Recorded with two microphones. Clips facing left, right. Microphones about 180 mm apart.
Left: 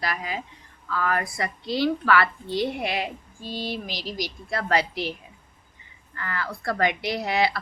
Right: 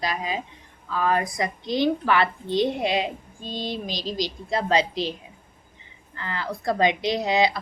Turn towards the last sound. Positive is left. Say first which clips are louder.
# right 3 dB
turn(degrees=-20)  # may be behind; listen again after turning